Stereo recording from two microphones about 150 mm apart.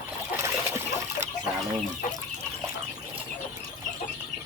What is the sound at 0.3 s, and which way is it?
Trickle, 15° right (ahead or behind).